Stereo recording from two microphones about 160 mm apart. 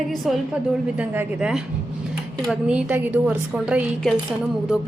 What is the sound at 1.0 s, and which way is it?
A woman's voice, 5° right (ahead or behind).